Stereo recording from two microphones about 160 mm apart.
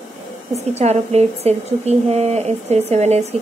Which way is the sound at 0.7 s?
40° right (ahead or behind).